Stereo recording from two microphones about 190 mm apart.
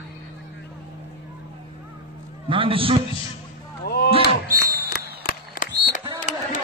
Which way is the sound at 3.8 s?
55° left (ahead or behind).